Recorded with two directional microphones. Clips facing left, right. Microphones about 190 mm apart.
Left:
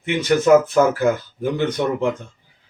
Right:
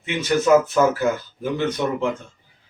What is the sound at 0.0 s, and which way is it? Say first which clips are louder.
Speech: left 3 dB; 15° left (ahead or behind).